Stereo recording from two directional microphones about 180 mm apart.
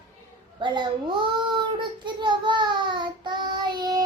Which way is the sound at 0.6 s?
25° right (ahead or behind).